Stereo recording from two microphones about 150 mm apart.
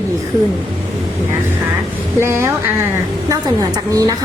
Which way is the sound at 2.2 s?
20° right (ahead or behind).